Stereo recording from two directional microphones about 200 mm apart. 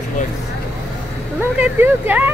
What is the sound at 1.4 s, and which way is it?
Speech, 10° right (ahead or behind).